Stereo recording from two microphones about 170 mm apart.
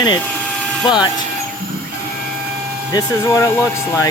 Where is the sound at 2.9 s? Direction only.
15° left (ahead or behind).